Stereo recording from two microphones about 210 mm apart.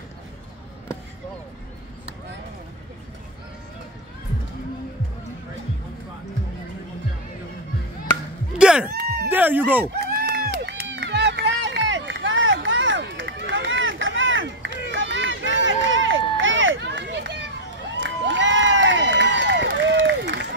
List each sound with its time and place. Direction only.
8.5 s a sound: 5° right (ahead or behind)
9.3 s speech: 10° right (ahead or behind)
9.9 s run: 50° right (ahead or behind)
18.2 s crowd: 60° right (ahead or behind)